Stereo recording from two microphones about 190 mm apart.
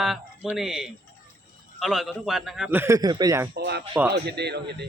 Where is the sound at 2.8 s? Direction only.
20° right (ahead or behind).